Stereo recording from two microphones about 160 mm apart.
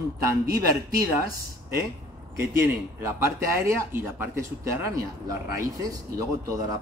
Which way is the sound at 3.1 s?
15° right (ahead or behind).